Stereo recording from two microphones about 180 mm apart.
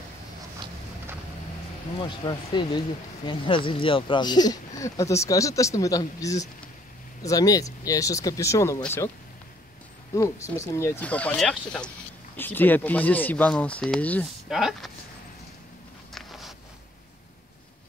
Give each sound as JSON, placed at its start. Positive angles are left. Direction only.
{"t": 2.0, "sound": "speech", "side_deg": 25}
{"t": 10.1, "sound": "speech", "side_deg": 15}
{"t": 16.1, "sound": "a sound", "side_deg": 0}